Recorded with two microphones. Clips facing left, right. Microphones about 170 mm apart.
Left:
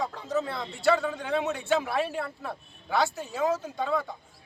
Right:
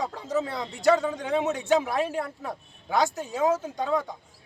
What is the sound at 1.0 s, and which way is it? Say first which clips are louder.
Speech: right 2 dB; 20° right (ahead or behind).